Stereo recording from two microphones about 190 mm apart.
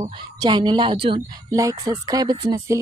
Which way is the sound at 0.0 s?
25° right (ahead or behind).